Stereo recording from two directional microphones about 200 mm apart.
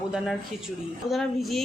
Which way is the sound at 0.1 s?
Centre (ahead or behind).